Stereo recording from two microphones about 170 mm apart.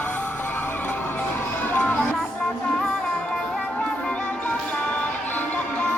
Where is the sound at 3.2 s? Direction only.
5° left (ahead or behind).